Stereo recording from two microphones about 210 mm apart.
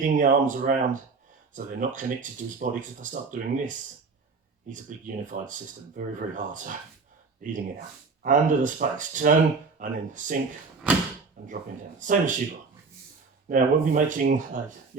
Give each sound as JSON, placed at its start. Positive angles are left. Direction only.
{"t": 0.0, "sound": "speech", "side_deg": -40}
{"t": 10.8, "sound": "speech", "side_deg": -5}
{"t": 11.4, "sound": "speech", "side_deg": -40}
{"t": 13.5, "sound": "speech", "side_deg": -40}